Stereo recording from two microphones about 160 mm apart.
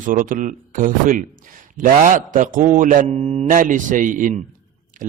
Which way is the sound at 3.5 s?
55° right (ahead or behind).